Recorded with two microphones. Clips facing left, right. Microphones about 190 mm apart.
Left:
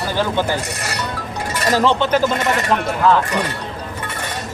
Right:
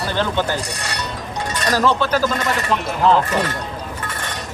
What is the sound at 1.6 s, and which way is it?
Speech, 20° left (ahead or behind).